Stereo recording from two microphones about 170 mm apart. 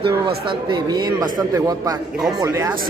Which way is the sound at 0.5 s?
25° right (ahead or behind).